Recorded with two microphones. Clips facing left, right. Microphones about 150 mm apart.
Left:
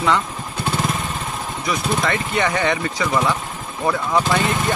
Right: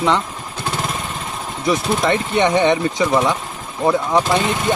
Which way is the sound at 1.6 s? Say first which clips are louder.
Right 4 dB; 25° right (ahead or behind).